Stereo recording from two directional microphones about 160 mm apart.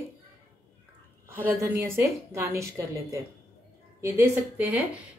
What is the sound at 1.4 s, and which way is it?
A woman's voice, 15° right (ahead or behind).